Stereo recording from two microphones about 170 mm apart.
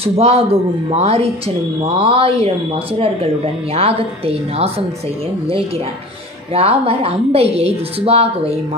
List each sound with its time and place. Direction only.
0.0 s a woman's voice: 35° right (ahead or behind)
3.7 s a woman's voice: 35° right (ahead or behind)
6.5 s a woman's voice: 35° right (ahead or behind)